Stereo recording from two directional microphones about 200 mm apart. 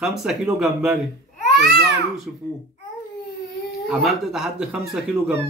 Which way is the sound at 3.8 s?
Centre (ahead or behind).